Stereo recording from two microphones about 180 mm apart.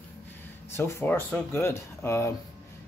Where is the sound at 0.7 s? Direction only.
15° left (ahead or behind).